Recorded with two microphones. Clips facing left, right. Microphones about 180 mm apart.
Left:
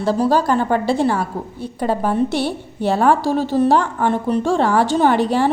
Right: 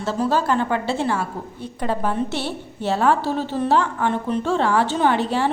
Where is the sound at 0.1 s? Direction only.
40° left (ahead or behind).